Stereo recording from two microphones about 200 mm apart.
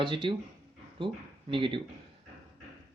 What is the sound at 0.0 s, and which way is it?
Speech, 25° right (ahead or behind).